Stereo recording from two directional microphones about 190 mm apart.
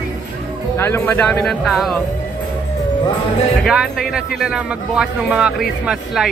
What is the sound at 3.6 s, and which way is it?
Speech, centre (ahead or behind).